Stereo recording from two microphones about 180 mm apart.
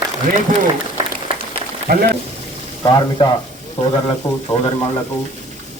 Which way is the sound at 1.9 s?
60° right (ahead or behind).